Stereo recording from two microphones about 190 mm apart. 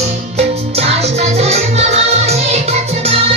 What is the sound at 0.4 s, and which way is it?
Music, 35° right (ahead or behind).